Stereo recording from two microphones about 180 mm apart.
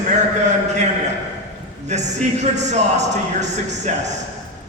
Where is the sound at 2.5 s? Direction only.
40° right (ahead or behind).